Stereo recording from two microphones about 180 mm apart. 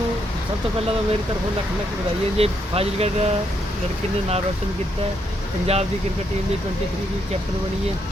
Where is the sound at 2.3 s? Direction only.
35° right (ahead or behind).